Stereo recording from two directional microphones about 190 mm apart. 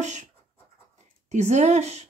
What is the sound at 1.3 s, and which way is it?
Speech, 35° right (ahead or behind).